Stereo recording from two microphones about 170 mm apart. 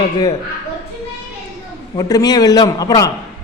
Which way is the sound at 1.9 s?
20° left (ahead or behind).